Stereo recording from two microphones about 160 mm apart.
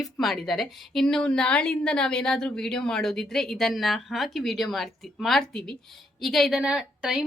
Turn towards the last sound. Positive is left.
turn(degrees=-5)  # may be behind; listen again after turning